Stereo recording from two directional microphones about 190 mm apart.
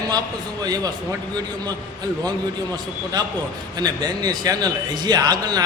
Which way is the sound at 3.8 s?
20° right (ahead or behind).